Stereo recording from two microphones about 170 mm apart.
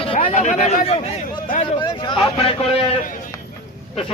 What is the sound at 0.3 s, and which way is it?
Speech, 45° left (ahead or behind).